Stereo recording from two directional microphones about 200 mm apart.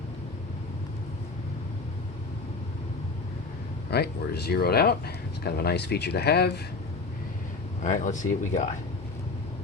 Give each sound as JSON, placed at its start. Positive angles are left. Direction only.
{"t": 3.9, "sound": "speech", "side_deg": 55}
{"t": 7.8, "sound": "speech", "side_deg": 40}